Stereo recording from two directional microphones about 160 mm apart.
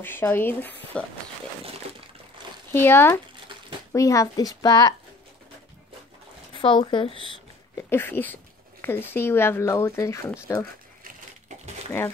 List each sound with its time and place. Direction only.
0.0 s speech: 15° left (ahead or behind)
2.7 s a woman's voice: 15° left (ahead or behind)
6.5 s speech: 30° left (ahead or behind)
7.9 s a woman's voice: 15° left (ahead or behind)
11.1 s typewriter: 50° right (ahead or behind)